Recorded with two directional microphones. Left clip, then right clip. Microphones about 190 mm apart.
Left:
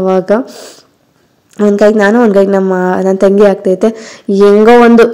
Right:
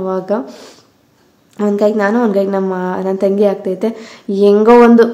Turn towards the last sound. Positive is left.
turn(degrees=30)  # may be behind; listen again after turning